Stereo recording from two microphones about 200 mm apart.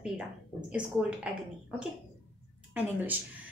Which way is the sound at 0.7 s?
5° right (ahead or behind).